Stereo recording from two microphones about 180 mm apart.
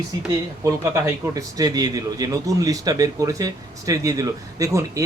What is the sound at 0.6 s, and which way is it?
Speech, 20° right (ahead or behind).